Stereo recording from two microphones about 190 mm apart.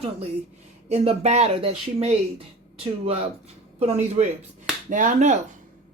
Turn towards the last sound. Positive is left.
turn(degrees=-40)  # may be behind; listen again after turning